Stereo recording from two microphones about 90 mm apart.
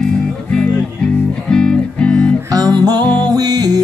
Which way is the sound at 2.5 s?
45° right (ahead or behind).